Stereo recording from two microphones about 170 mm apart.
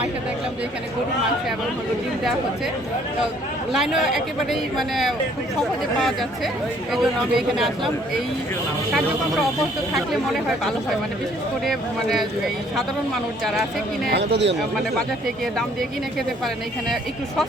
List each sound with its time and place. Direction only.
3.7 s speech: centre (ahead or behind)
9.9 s speech: centre (ahead or behind)
13.4 s speech: centre (ahead or behind)
14.1 s speech: 90° right